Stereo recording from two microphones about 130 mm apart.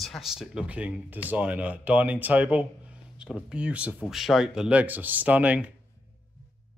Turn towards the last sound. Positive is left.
turn(degrees=-10)  # may be behind; listen again after turning